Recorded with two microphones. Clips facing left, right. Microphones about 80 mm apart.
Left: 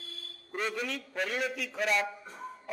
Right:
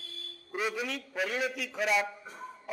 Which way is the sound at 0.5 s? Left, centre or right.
Centre.